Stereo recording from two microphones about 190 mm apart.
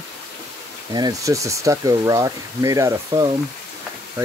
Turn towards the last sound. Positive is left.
turn(degrees=-20)  # may be behind; listen again after turning